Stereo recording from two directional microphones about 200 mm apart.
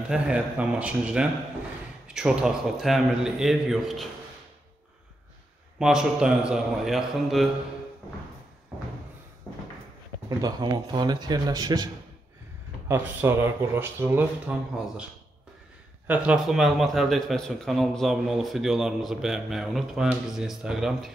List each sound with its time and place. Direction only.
0.1 s a man's voice: 5° right (ahead or behind)
5.8 s a man's voice: 5° right (ahead or behind)
10.4 s a man's voice: 20° right (ahead or behind)
16.1 s a man's voice: 5° right (ahead or behind)